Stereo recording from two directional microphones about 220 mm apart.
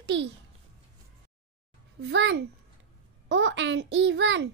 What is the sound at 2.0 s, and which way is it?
A child's voice, 55° right (ahead or behind).